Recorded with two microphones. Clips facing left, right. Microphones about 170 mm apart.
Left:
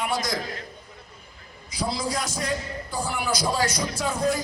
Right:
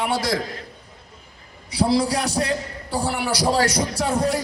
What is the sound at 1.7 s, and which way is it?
A man's voice, 70° right (ahead or behind).